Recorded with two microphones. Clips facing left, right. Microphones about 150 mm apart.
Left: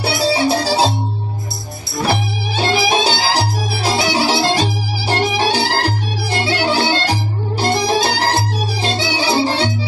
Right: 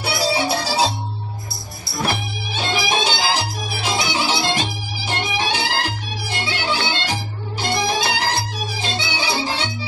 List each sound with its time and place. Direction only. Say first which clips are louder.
0.0 s music: left 5 dB; 30° left (ahead or behind)
2.0 s music: left 7 dB; 35° left (ahead or behind)